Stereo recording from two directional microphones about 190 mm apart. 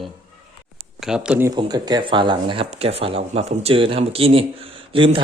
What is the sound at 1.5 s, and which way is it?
Speech, 20° right (ahead or behind).